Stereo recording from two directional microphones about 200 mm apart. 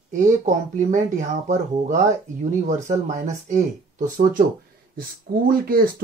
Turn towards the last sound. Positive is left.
turn(degrees=-45)  # may be behind; listen again after turning